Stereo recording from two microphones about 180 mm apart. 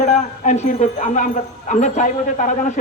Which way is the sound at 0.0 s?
40° left (ahead or behind).